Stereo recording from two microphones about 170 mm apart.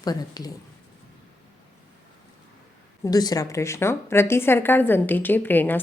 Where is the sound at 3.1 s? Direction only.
20° left (ahead or behind).